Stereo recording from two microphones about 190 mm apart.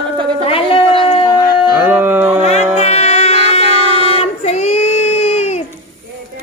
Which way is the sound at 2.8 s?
35° left (ahead or behind).